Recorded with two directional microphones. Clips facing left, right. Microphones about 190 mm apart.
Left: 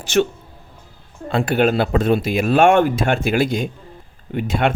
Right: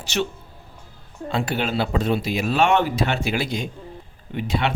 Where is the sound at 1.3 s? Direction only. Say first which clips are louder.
Left 7 dB; 55° left (ahead or behind).